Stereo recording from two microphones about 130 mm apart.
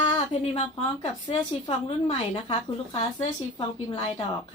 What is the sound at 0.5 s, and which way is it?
Speech, 50° left (ahead or behind).